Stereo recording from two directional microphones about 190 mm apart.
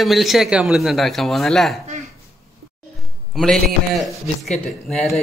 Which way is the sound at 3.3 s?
Centre (ahead or behind).